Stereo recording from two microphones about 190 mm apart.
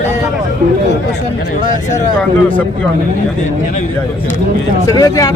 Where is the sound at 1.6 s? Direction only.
40° left (ahead or behind).